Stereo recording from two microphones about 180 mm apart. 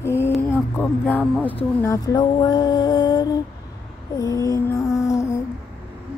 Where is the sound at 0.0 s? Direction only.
15° left (ahead or behind).